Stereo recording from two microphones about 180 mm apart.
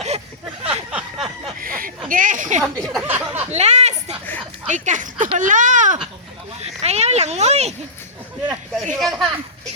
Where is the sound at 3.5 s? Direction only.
40° right (ahead or behind).